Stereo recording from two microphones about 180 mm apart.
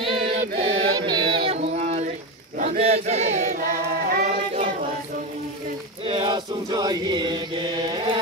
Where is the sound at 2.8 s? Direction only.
35° right (ahead or behind).